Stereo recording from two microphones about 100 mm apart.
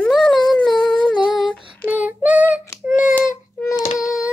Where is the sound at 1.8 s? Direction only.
15° right (ahead or behind).